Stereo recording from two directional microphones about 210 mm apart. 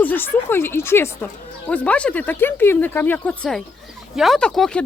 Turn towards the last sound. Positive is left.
turn(degrees=5)  # may be behind; listen again after turning